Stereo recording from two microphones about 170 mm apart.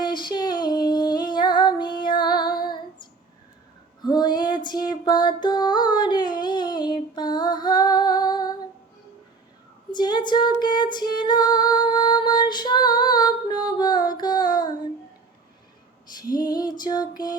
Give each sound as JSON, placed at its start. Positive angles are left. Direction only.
{"t": 0.0, "sound": "female singing", "side_deg": 25}
{"t": 4.0, "sound": "music", "side_deg": 25}
{"t": 9.9, "sound": "music", "side_deg": 25}
{"t": 16.3, "sound": "female singing", "side_deg": 25}